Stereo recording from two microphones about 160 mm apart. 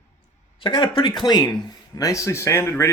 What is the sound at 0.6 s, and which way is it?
Speech, 30° left (ahead or behind).